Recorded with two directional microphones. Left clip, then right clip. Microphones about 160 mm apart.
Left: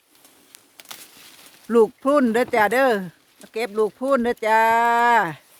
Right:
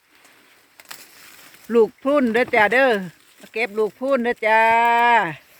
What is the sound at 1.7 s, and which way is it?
Speech, 10° left (ahead or behind).